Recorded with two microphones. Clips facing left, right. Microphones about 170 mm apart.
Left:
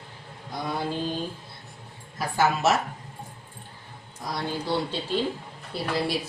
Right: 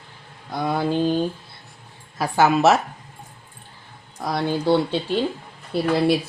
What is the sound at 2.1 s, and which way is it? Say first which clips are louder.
Speech: right 6 dB; 75° right (ahead or behind).